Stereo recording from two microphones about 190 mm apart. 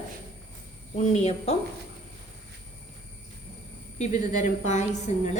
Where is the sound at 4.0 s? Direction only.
35° left (ahead or behind).